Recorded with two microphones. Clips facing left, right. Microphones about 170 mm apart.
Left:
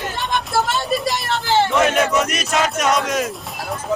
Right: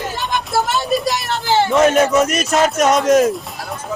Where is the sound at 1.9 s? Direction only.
40° right (ahead or behind).